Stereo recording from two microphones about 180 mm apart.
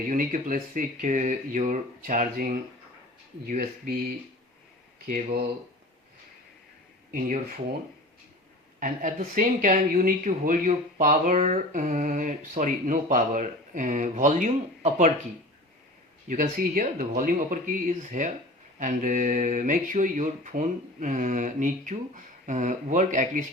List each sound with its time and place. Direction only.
0.1 s speech: 45° right (ahead or behind)
5.0 s speech: 55° right (ahead or behind)
7.1 s speech: 50° right (ahead or behind)
8.8 s speech: 45° right (ahead or behind)
16.3 s speech: 50° right (ahead or behind)